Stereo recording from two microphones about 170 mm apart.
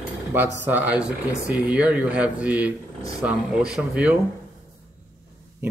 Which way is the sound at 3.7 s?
10° right (ahead or behind).